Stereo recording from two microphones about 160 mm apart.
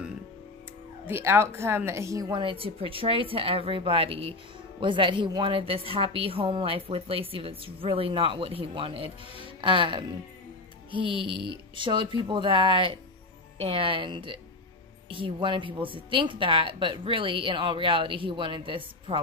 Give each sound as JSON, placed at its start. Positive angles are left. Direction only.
{"t": 1.0, "sound": "a woman's voice", "side_deg": -15}